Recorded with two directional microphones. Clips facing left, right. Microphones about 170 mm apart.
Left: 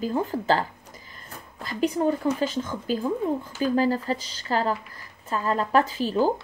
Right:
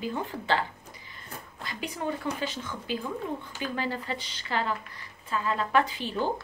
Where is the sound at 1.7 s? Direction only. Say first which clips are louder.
Left 10 dB; 40° left (ahead or behind).